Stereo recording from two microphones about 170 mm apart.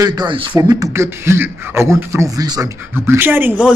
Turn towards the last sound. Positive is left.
turn(degrees=-10)  # may be behind; listen again after turning